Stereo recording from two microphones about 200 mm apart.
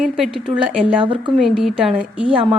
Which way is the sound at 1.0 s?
25° right (ahead or behind).